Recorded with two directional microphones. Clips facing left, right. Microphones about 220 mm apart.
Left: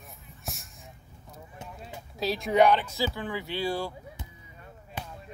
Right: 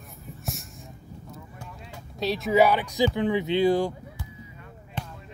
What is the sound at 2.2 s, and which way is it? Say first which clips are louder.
Speech: right 2 dB; centre (ahead or behind).